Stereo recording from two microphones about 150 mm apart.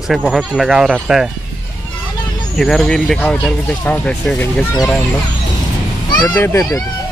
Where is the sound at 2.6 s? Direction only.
5° left (ahead or behind).